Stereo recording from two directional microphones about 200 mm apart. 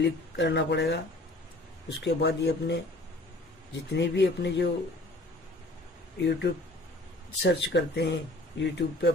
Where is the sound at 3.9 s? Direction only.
60° left (ahead or behind).